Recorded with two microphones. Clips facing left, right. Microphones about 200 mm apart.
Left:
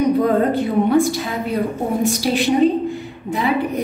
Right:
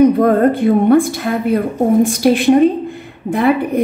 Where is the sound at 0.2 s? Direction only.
55° right (ahead or behind).